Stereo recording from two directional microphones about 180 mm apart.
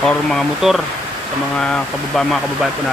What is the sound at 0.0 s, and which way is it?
Speech, 5° left (ahead or behind).